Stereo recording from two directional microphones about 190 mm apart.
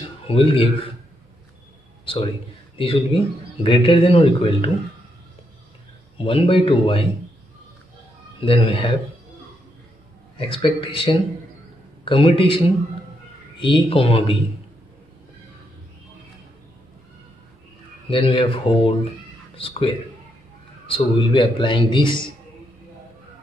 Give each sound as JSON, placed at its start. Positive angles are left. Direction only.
{"t": 0.3, "sound": "speech", "side_deg": 30}
{"t": 2.0, "sound": "a man's voice", "side_deg": 30}
{"t": 6.1, "sound": "speech", "side_deg": 30}
{"t": 8.4, "sound": "speech", "side_deg": 25}
{"t": 10.3, "sound": "speech", "side_deg": 25}
{"t": 18.1, "sound": "speech", "side_deg": 30}